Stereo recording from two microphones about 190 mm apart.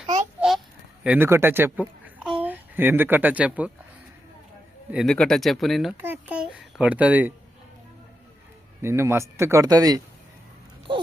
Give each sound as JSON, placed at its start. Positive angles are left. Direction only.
{"t": 0.3, "sound": "a sound", "side_deg": 0}
{"t": 1.0, "sound": "a woman's voice", "side_deg": -10}
{"t": 4.9, "sound": "a child's voice", "side_deg": 0}
{"t": 8.8, "sound": "speech", "side_deg": -15}